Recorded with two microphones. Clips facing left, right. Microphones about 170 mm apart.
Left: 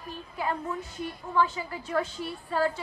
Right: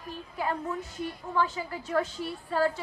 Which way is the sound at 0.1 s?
40° right (ahead or behind).